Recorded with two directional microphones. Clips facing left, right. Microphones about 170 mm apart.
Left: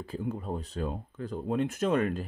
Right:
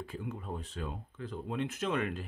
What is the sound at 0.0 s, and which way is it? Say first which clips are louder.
Speech: left 6 dB; 35° left (ahead or behind).